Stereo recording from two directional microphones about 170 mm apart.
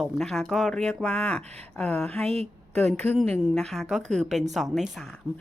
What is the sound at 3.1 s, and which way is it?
Speech, 5° left (ahead or behind).